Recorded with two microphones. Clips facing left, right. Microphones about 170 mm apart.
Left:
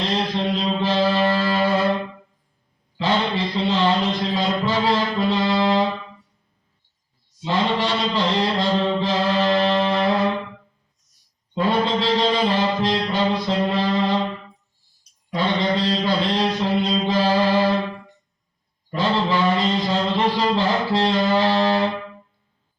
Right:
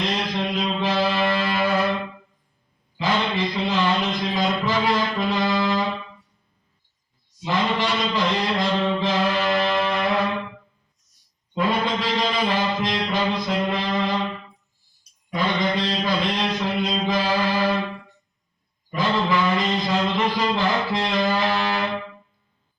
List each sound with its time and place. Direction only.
0.2 s mantra: 30° left (ahead or behind)
3.0 s a sound: 30° left (ahead or behind)
7.4 s chant: 30° left (ahead or behind)
11.5 s music: 30° left (ahead or behind)
15.3 s mantra: 30° left (ahead or behind)
18.9 s mantra: 30° left (ahead or behind)